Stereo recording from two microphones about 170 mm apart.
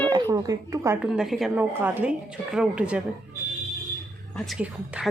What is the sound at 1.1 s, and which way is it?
A woman's voice, centre (ahead or behind).